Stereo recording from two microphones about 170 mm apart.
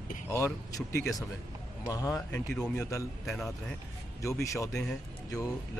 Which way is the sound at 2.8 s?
15° left (ahead or behind).